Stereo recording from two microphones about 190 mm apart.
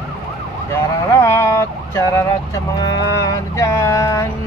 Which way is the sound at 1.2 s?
15° left (ahead or behind).